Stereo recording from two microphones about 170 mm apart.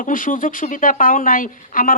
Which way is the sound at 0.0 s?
50° left (ahead or behind).